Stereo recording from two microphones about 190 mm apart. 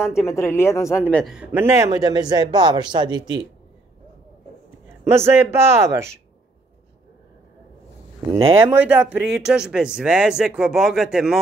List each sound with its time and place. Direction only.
0.0 s speech: 5° right (ahead or behind)
0.3 s speech: 15° left (ahead or behind)
1.1 s a man's voice: centre (ahead or behind); by 3.4 s 25° right (ahead or behind)
5.0 s a man's voice: 15° right (ahead or behind)
8.7 s speech: 10° right (ahead or behind)